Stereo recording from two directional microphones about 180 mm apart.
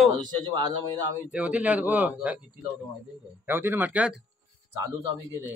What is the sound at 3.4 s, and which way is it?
Speech, 10° right (ahead or behind).